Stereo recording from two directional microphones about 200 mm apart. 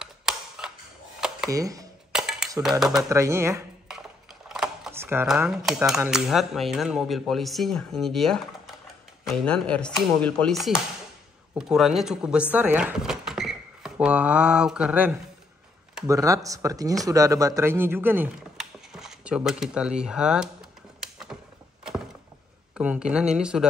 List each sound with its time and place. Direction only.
0.0 s tick-tock: 5° right (ahead or behind)
1.5 s speech: 15° right (ahead or behind)
2.1 s cutlery: 5° right (ahead or behind)
2.8 s speech: centre (ahead or behind)
3.1 s speech: 15° right (ahead or behind)
3.9 s a sound: centre (ahead or behind)
5.2 s speech: 5° right (ahead or behind)
21.0 s a sound: centre (ahead or behind)
22.8 s speech: 5° right (ahead or behind)